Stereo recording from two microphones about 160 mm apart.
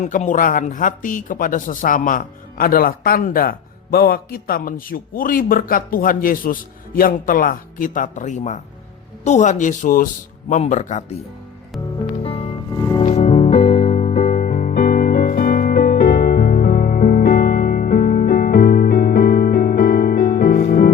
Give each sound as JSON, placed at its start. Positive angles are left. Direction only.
{"t": 0.0, "sound": "speech", "side_deg": 50}
{"t": 12.2, "sound": "music", "side_deg": 35}
{"t": 12.7, "sound": "music", "side_deg": 20}
{"t": 13.1, "sound": "music", "side_deg": 40}